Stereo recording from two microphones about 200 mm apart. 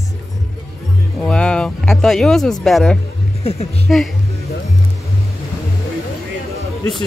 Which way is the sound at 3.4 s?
30° left (ahead or behind).